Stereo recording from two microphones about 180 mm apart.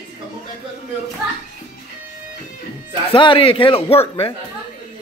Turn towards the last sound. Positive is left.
turn(degrees=30)  # may be behind; listen again after turning